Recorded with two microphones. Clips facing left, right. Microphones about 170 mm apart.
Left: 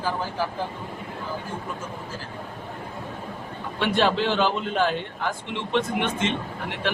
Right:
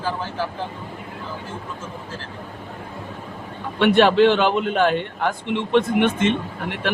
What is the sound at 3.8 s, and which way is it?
A man's voice, 65° right (ahead or behind).